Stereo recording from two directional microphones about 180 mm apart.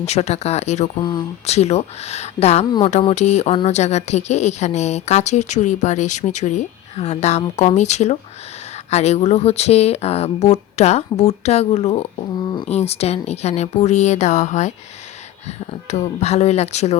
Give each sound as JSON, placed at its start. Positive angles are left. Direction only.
{"t": 0.0, "sound": "speech", "side_deg": 35}